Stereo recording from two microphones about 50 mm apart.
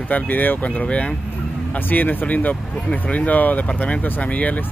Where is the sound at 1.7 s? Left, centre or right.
Left.